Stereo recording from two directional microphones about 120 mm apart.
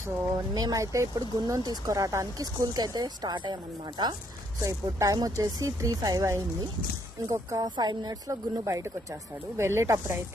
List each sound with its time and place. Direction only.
0.5 s speech: 30° right (ahead or behind)